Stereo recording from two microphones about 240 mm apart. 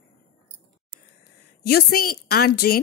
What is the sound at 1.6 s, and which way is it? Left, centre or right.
A woman's voice, left.